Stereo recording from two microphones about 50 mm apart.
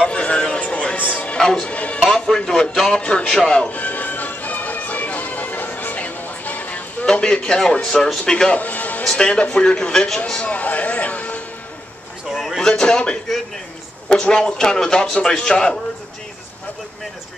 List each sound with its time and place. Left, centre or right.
0.1 s music: left
1.3 s music: centre
2.0 s a man's voice: centre
3.6 s music: left
7.1 s a man's voice: centre
8.5 s music: left
9.0 s a man's voice: centre
10.4 s speech: left
12.4 s a sound: centre
12.6 s a man's voice: centre